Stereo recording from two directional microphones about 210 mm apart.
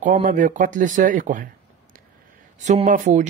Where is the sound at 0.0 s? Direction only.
40° right (ahead or behind).